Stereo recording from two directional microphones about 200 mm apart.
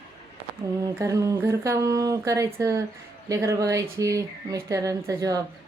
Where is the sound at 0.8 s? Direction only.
15° right (ahead or behind).